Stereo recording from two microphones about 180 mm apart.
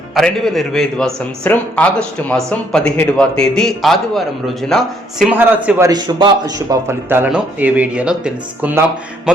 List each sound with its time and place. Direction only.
0.1 s a man's voice: centre (ahead or behind)
5.3 s a man's voice: 10° right (ahead or behind)
5.9 s a man's voice: 25° right (ahead or behind); by 8.8 s 5° right (ahead or behind)